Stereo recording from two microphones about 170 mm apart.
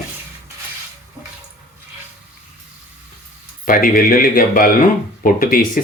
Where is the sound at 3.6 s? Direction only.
55° left (ahead or behind).